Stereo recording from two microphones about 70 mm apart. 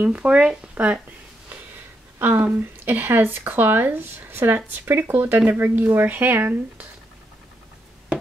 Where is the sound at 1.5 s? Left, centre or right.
Right.